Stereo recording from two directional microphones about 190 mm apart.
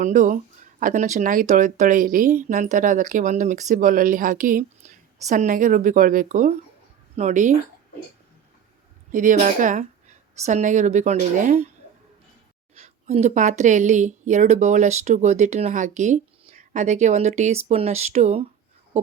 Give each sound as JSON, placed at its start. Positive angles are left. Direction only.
{"t": 0.0, "sound": "a woman's voice", "side_deg": -40}
{"t": 9.1, "sound": "a woman's voice", "side_deg": -40}
{"t": 12.7, "sound": "a woman's voice", "side_deg": -35}